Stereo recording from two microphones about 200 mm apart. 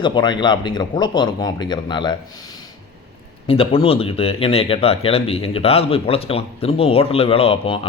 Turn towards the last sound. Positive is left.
turn(degrees=30)  # may be behind; listen again after turning